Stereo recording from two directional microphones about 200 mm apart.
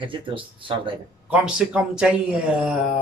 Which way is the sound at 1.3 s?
5° right (ahead or behind).